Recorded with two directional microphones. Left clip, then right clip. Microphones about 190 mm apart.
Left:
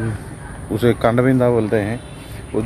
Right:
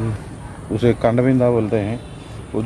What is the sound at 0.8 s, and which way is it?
Speech, centre (ahead or behind).